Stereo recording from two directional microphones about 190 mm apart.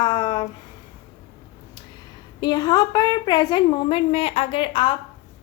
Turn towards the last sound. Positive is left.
turn(degrees=30)  # may be behind; listen again after turning